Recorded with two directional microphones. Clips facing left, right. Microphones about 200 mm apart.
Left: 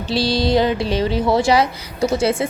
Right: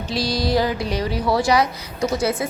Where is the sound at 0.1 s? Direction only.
30° left (ahead or behind).